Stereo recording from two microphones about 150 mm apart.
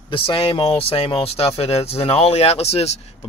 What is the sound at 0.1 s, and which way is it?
Speech, 35° left (ahead or behind).